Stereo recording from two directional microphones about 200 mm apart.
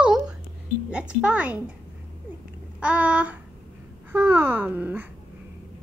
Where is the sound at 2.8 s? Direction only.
5° right (ahead or behind).